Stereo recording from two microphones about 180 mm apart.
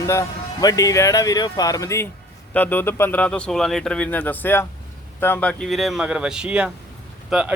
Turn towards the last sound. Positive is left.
turn(degrees=0)  # may be behind; listen again after turning